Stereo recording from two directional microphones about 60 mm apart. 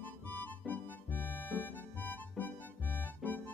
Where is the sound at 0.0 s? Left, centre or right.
Left.